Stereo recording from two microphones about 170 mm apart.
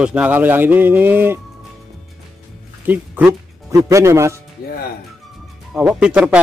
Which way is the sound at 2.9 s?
10° right (ahead or behind).